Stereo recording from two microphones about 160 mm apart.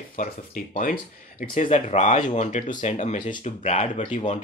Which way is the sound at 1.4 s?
50° left (ahead or behind).